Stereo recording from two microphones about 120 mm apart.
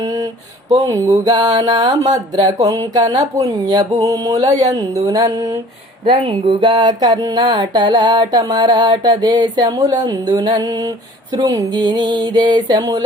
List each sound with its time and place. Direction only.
0.0 s a sound: 30° right (ahead or behind)
0.8 s speech: 30° right (ahead or behind)
6.1 s speech: 45° right (ahead or behind)